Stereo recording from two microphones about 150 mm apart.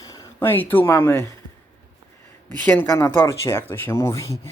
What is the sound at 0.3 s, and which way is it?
Speech, 15° left (ahead or behind).